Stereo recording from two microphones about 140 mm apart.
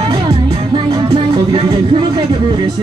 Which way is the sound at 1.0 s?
35° right (ahead or behind).